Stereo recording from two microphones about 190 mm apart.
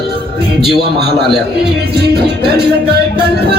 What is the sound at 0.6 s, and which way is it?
Music, 60° right (ahead or behind).